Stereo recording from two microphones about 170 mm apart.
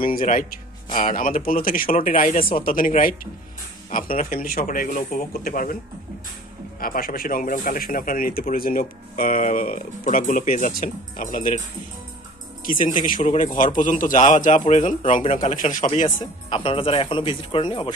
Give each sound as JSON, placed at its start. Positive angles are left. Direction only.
{"t": 0.0, "sound": "a man's voice", "side_deg": 55}
{"t": 4.3, "sound": "speech", "side_deg": 60}
{"t": 6.8, "sound": "speech", "side_deg": 55}
{"t": 12.6, "sound": "a man's voice", "side_deg": 50}
{"t": 16.4, "sound": "speech", "side_deg": 30}